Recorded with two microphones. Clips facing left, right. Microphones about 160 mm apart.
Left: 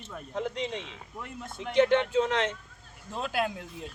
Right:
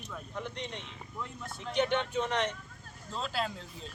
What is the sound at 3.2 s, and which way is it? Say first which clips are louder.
Speech: left 5 dB; 55° left (ahead or behind).